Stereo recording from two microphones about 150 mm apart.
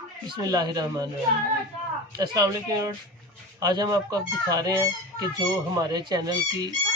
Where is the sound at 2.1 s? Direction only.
25° right (ahead or behind).